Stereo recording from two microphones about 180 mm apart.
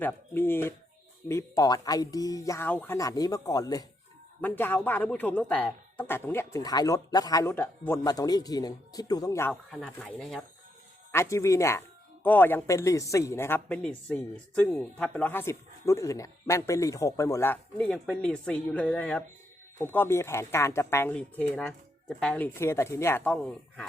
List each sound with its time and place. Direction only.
0.0 s speech: 10° left (ahead or behind)
11.1 s speech: 15° left (ahead or behind)